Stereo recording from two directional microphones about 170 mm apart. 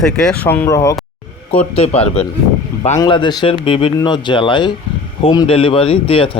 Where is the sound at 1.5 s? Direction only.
35° left (ahead or behind).